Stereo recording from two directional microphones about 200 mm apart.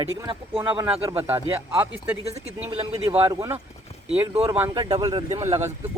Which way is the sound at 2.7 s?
30° right (ahead or behind).